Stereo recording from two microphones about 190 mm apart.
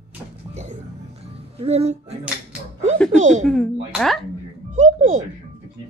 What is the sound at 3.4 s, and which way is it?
Speech, centre (ahead or behind).